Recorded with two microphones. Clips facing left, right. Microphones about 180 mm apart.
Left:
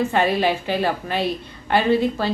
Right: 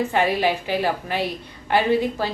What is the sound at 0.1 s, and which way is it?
A woman's voice, 15° right (ahead or behind).